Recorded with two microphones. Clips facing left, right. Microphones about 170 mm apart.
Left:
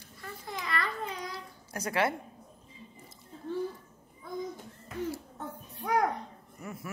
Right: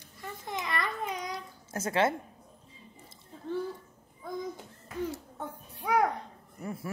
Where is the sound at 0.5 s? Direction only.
20° right (ahead or behind).